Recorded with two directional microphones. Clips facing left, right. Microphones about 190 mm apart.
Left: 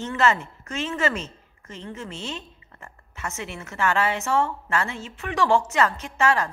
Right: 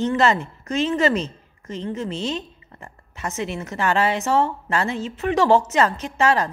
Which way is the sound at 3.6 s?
35° right (ahead or behind).